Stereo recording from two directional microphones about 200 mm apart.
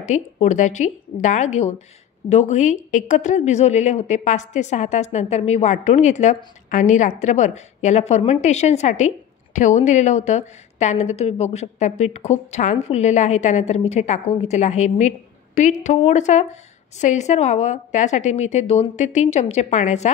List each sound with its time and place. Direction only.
0.0 s a woman's voice: 35° left (ahead or behind)